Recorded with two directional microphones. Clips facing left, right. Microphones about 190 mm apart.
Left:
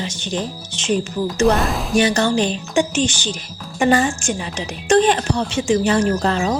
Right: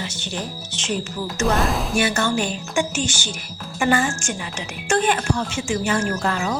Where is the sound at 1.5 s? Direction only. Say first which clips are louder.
Even; centre (ahead or behind).